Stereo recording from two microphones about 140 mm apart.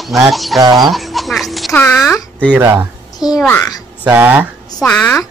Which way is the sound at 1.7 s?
15° left (ahead or behind).